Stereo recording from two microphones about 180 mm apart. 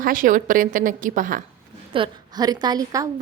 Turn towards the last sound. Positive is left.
turn(degrees=-20)  # may be behind; listen again after turning